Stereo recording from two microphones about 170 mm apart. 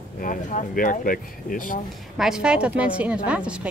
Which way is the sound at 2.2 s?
5° right (ahead or behind).